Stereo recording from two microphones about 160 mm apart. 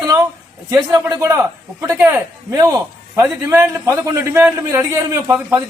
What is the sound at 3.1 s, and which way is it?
A man's voice, 15° right (ahead or behind).